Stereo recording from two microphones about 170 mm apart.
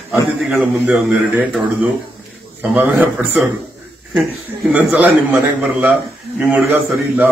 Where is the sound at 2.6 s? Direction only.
10° right (ahead or behind).